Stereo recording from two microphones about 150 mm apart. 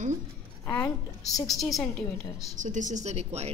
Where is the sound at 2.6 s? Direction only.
55° right (ahead or behind).